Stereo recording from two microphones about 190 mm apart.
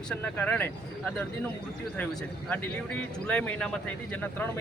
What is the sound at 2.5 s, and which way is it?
Speech, 10° left (ahead or behind).